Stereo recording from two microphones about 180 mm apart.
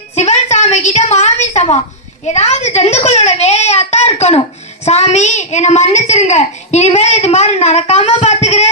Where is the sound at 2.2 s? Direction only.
40° left (ahead or behind).